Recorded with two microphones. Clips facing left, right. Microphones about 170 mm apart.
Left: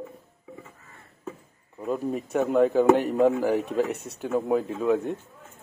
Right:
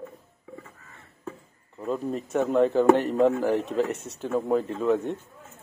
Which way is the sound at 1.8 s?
5° left (ahead or behind).